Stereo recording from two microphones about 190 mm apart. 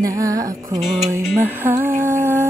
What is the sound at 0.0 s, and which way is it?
Music, 15° right (ahead or behind).